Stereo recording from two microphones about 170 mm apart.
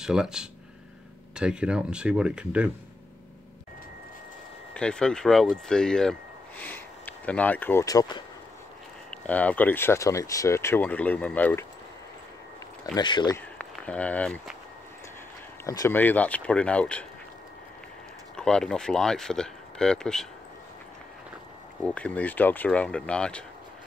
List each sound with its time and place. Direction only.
0.0 s speech: 5° right (ahead or behind)
4.7 s speech: 5° left (ahead or behind); by 8.2 s 20° left (ahead or behind)
9.1 s speech: 10° left (ahead or behind)
12.9 s speech: 25° left (ahead or behind)
13.6 s speech: 10° left (ahead or behind)
15.6 s speech: 20° left (ahead or behind)
18.3 s speech: 5° left (ahead or behind)
21.8 s speech: 5° left (ahead or behind)